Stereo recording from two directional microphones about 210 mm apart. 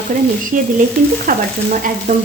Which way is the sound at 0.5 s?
40° right (ahead or behind).